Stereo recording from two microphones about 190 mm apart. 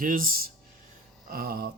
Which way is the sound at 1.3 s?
50° right (ahead or behind).